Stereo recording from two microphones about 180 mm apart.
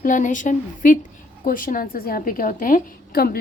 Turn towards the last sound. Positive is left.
turn(degrees=55)  # may be behind; listen again after turning